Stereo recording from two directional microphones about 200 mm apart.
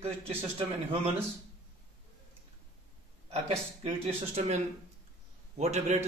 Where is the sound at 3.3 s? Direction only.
30° right (ahead or behind).